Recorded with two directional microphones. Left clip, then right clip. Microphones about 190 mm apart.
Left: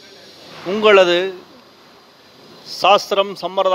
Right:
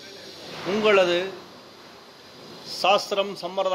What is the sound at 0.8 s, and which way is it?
Speech, 50° left (ahead or behind).